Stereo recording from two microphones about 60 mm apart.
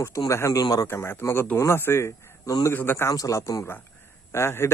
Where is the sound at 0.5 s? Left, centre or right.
Left.